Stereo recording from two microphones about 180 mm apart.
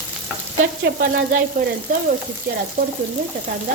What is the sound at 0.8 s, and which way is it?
Frying, 55° right (ahead or behind).